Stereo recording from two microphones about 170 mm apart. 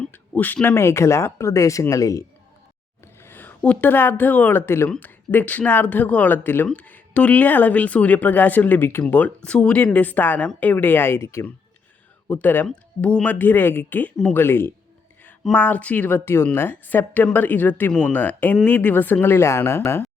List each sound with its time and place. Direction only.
0.0 s speech: 10° left (ahead or behind)